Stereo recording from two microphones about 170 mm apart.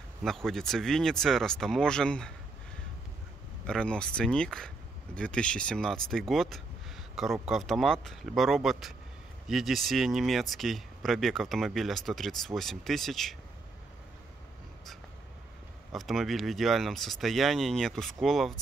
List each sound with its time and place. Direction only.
0.2 s speech: centre (ahead or behind)
3.6 s speech: 5° left (ahead or behind)
15.9 s speech: centre (ahead or behind)